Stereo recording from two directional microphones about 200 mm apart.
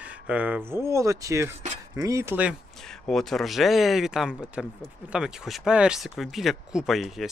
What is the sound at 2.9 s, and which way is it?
Speech, centre (ahead or behind).